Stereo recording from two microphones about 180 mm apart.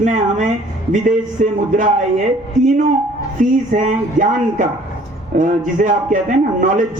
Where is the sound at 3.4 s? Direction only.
45° right (ahead or behind).